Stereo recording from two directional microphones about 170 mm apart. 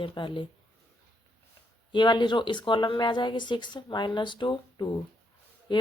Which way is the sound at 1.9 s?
25° left (ahead or behind).